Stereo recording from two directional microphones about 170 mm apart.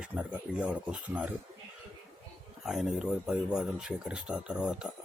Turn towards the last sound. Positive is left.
turn(degrees=-5)  # may be behind; listen again after turning